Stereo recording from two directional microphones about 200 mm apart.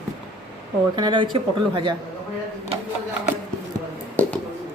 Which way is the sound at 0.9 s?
25° right (ahead or behind).